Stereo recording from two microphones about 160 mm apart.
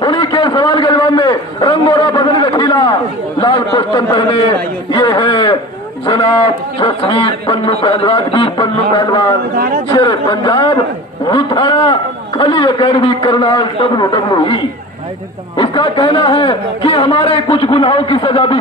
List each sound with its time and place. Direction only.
0.0 s a sound: 30° left (ahead or behind)
6.8 s snicker: 30° left (ahead or behind)
7.8 s a man's voice: 35° left (ahead or behind)